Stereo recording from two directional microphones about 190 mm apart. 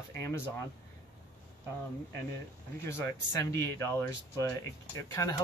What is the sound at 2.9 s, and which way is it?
Speech, 15° left (ahead or behind).